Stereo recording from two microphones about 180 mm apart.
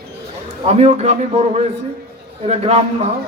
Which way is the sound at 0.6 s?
35° right (ahead or behind).